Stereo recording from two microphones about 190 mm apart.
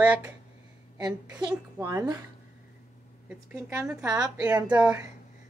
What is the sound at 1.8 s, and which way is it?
Speech, 20° right (ahead or behind).